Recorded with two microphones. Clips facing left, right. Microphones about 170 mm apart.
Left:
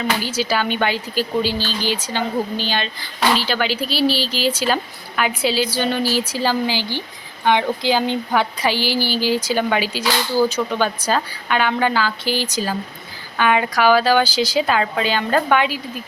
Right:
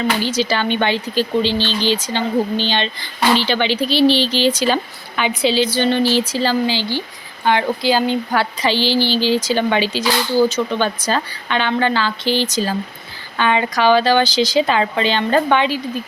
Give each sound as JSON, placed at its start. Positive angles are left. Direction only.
{"t": 0.2, "sound": "speech", "side_deg": 10}